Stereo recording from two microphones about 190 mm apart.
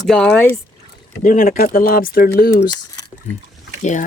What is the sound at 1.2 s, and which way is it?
Speech, 45° left (ahead or behind).